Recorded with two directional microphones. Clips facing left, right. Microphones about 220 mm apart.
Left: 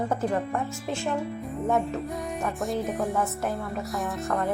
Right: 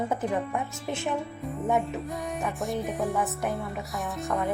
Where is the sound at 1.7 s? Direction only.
Centre (ahead or behind).